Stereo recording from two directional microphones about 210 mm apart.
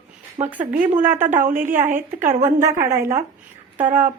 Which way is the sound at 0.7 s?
40° right (ahead or behind).